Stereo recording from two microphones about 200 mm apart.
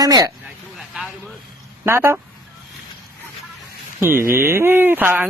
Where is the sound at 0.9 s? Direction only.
Centre (ahead or behind).